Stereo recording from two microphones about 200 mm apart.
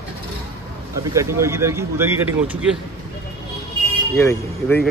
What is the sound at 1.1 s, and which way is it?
Speech, 15° right (ahead or behind).